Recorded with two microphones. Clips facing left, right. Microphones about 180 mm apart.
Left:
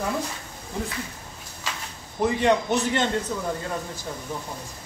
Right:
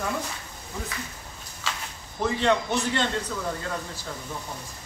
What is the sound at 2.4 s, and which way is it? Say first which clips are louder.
Speech: left 2 dB; 15° left (ahead or behind).